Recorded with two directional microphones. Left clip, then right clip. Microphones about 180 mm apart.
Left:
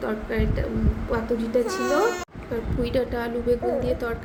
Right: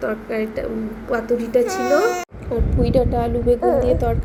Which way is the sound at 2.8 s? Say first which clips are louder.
Right 7 dB; 5° right (ahead or behind).